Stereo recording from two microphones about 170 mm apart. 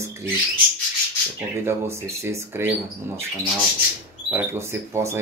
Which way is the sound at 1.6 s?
15° right (ahead or behind).